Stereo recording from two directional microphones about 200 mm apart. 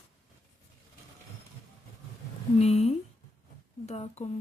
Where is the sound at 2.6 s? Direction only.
35° left (ahead or behind).